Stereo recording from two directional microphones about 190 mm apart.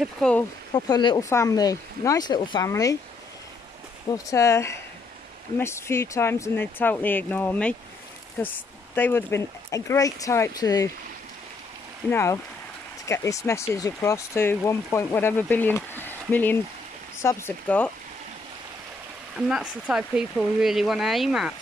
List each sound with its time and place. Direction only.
0.0 s speech: 5° left (ahead or behind)
0.7 s speech: 20° left (ahead or behind)
4.3 s speech: 15° left (ahead or behind)
12.1 s speech: 15° left (ahead or behind)
19.3 s speech: 5° right (ahead or behind)